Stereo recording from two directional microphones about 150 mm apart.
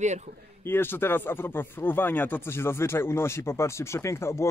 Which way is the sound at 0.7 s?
15° left (ahead or behind).